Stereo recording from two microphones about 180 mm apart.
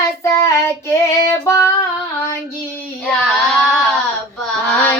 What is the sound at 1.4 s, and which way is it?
Female singing, 15° left (ahead or behind).